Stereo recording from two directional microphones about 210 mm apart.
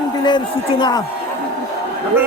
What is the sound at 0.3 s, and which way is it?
Speech, 20° left (ahead or behind).